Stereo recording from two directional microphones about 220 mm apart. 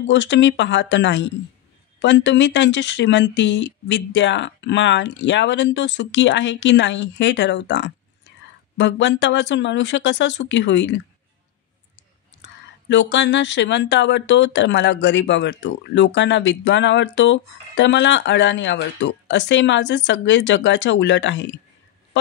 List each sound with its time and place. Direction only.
0.0 s speech: 55° left (ahead or behind)
12.4 s speech: 55° left (ahead or behind)